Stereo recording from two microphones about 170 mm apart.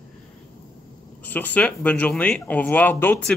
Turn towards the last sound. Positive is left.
turn(degrees=10)  # may be behind; listen again after turning